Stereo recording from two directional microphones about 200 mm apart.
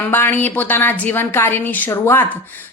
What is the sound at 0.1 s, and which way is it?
A woman's voice, 10° left (ahead or behind).